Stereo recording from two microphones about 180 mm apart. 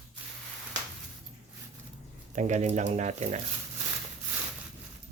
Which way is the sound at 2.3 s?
40° right (ahead or behind).